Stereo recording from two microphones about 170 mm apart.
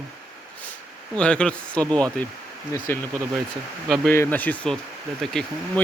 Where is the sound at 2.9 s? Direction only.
15° left (ahead or behind).